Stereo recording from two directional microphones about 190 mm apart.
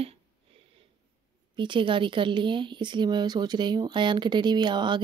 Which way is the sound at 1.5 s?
25° right (ahead or behind).